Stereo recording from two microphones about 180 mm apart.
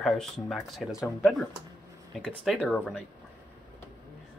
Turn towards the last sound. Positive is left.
turn(degrees=5)  # may be behind; listen again after turning